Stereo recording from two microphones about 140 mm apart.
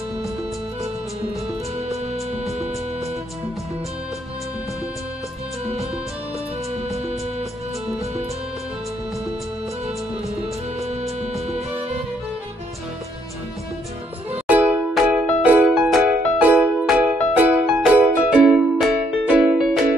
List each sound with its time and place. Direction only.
10.8 s music: 50° right (ahead or behind)
14.5 s music: 10° right (ahead or behind)